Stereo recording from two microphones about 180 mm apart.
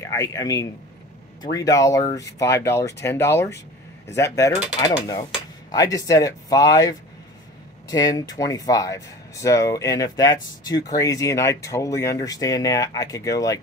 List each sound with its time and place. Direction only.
0.0 s a man's voice: 15° left (ahead or behind)